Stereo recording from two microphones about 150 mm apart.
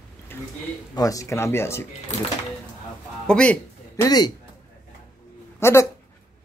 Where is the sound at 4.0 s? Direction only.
25° left (ahead or behind).